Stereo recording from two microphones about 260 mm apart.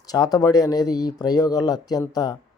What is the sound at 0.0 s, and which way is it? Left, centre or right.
Speech, centre.